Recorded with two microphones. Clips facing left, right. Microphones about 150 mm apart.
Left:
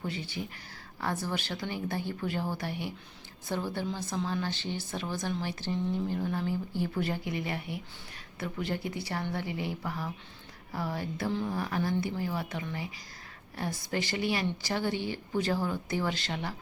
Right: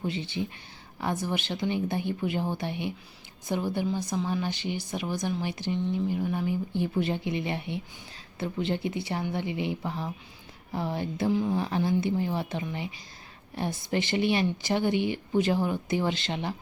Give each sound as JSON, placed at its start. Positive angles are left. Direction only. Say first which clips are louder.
{"t": 0.0, "sound": "speech", "louder": "right 5 dB", "side_deg": -25}
{"t": 6.1, "sound": "speech", "louder": "right 3 dB", "side_deg": -5}
{"t": 6.3, "sound": "speech", "louder": "right 3 dB", "side_deg": -15}
{"t": 11.3, "sound": "speech", "louder": "right 6 dB", "side_deg": -10}
{"t": 11.5, "sound": "speech", "louder": "right 4 dB", "side_deg": -25}